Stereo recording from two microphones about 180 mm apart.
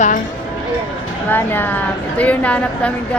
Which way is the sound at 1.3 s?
10° left (ahead or behind).